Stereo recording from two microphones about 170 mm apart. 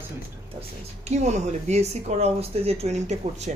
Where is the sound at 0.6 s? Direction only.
40° right (ahead or behind).